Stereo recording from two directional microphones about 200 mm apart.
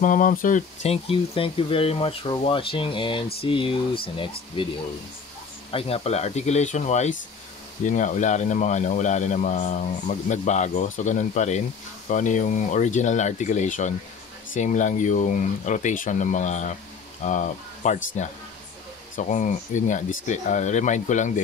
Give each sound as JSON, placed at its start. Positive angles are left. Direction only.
{"t": 0.0, "sound": "a man's voice", "side_deg": 40}
{"t": 19.1, "sound": "a man's voice", "side_deg": 40}